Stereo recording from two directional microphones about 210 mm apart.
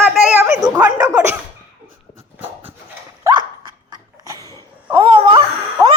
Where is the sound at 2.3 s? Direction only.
10° right (ahead or behind).